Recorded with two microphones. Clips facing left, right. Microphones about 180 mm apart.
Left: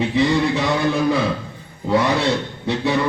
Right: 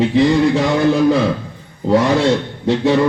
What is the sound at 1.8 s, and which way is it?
Music, 40° right (ahead or behind).